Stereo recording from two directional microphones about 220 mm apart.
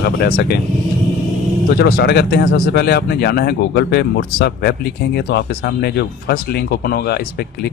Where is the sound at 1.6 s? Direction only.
45° left (ahead or behind).